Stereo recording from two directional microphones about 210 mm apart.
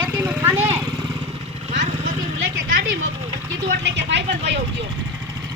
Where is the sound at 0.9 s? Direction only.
20° right (ahead or behind).